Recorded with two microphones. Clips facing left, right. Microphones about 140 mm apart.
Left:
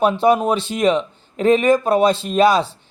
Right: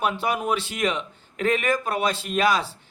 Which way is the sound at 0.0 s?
25° left (ahead or behind).